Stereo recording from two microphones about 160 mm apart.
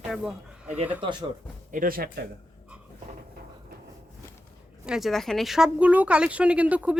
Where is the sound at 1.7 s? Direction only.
60° right (ahead or behind).